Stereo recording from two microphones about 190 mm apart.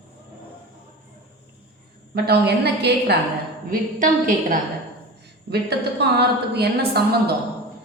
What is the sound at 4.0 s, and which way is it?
Speech, 45° right (ahead or behind).